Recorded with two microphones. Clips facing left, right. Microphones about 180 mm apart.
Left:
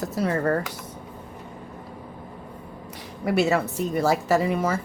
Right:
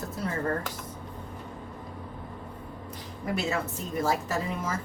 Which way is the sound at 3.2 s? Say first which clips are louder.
Left 8 dB; 75° left (ahead or behind).